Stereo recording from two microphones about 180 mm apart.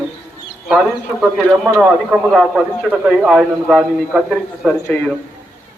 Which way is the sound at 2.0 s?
5° right (ahead or behind).